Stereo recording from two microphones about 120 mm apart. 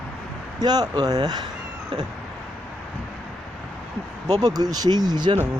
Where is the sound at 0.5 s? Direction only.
35° right (ahead or behind).